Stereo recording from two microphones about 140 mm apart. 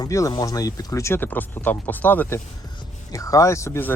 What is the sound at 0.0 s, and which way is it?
Speech, 25° left (ahead or behind).